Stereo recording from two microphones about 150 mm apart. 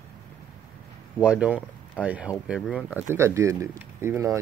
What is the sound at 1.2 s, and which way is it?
Speech, 10° right (ahead or behind).